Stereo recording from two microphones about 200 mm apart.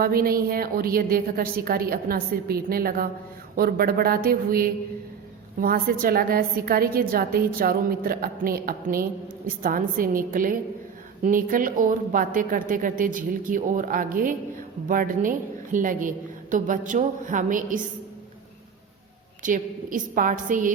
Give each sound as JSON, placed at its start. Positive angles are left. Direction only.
{"t": 0.0, "sound": "a woman's voice", "side_deg": -45}
{"t": 19.4, "sound": "a woman's voice", "side_deg": -40}